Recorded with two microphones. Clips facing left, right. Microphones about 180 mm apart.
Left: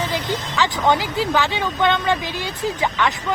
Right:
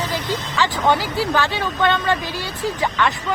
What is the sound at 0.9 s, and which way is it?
Speech, 20° left (ahead or behind).